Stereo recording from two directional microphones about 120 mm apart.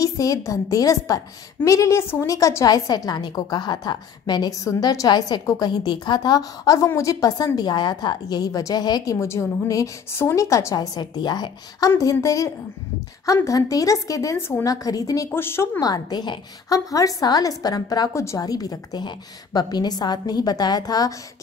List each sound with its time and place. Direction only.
0.0 s a woman's voice: 30° left (ahead or behind)